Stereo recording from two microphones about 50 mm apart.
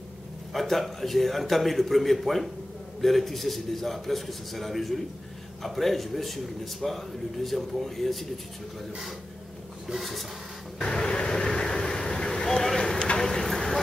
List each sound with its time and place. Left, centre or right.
0.5 s speech: centre
9.9 s speech: centre
10.8 s vehicle: centre